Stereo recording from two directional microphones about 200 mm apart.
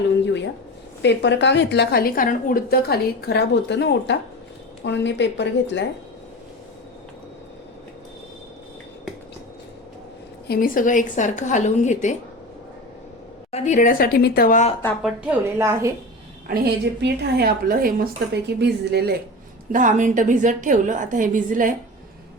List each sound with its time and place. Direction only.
1.0 s a woman's voice: 60° left (ahead or behind)
10.5 s a woman's voice: 45° left (ahead or behind)
13.5 s a woman's voice: 40° left (ahead or behind)
15.0 s a woman's voice: 10° right (ahead or behind)
16.5 s a woman's voice: 55° right (ahead or behind)
19.7 s a woman's voice: 40° right (ahead or behind)